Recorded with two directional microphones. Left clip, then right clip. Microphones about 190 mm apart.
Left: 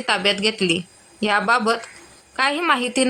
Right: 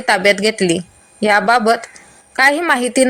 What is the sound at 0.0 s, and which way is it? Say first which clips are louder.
A woman's voice: right 6 dB; 15° right (ahead or behind).